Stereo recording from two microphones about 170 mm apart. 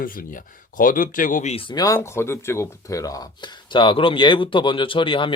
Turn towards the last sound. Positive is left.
turn(degrees=30)  # may be behind; listen again after turning